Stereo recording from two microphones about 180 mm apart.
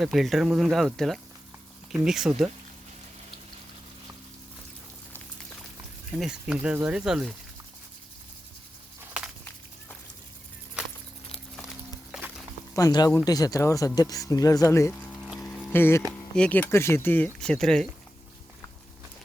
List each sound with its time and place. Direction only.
0.0 s speech: centre (ahead or behind)
6.1 s speech: 5° right (ahead or behind)
12.7 s speech: 20° left (ahead or behind)
15.2 s a sound: centre (ahead or behind)
15.7 s speech: 15° left (ahead or behind)